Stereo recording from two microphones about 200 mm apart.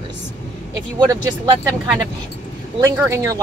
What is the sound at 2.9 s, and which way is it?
Speech, 10° right (ahead or behind).